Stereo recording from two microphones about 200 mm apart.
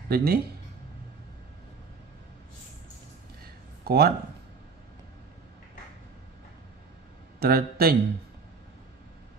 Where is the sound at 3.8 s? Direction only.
50° right (ahead or behind).